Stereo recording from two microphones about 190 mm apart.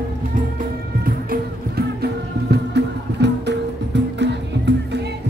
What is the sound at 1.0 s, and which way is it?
Music, 50° right (ahead or behind).